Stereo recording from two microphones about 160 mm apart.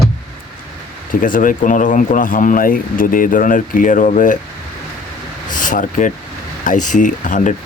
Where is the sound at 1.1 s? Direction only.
60° left (ahead or behind).